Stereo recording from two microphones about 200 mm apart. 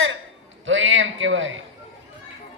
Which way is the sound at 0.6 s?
70° right (ahead or behind).